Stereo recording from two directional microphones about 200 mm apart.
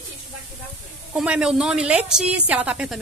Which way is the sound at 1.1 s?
5° right (ahead or behind).